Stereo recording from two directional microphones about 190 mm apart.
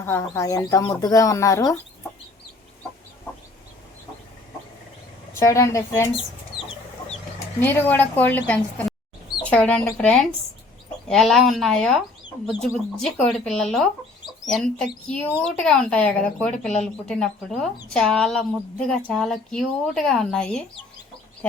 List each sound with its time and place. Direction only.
0.0 s speech: 15° left (ahead or behind)
5.3 s speech: 15° left (ahead or behind)
7.6 s speech: 10° left (ahead or behind)